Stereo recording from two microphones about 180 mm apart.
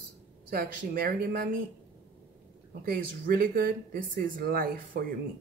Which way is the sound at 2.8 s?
55° right (ahead or behind).